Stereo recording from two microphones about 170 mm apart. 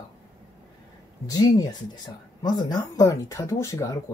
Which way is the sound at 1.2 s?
20° left (ahead or behind).